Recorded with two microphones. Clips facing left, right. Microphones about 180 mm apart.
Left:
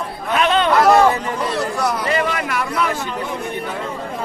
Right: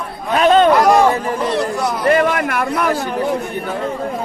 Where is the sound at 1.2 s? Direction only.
20° right (ahead or behind).